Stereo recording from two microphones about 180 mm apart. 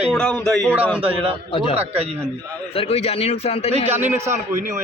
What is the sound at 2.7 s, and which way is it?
A man's voice, 35° left (ahead or behind).